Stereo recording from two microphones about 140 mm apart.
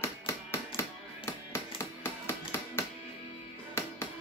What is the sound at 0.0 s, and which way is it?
Music, 20° left (ahead or behind).